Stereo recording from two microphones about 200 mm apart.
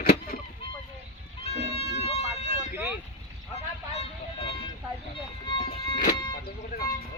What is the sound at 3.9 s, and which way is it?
Violin, 30° left (ahead or behind).